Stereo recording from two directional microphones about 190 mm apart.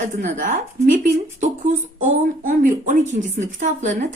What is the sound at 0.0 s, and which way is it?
A woman's voice, 40° right (ahead or behind).